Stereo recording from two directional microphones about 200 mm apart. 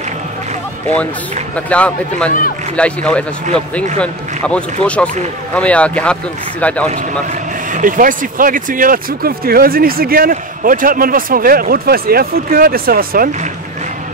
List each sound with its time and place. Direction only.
1.7 s a man's voice: 5° left (ahead or behind)
7.7 s speech: 40° right (ahead or behind)